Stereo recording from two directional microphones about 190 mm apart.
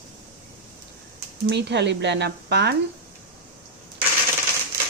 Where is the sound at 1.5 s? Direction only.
65° right (ahead or behind).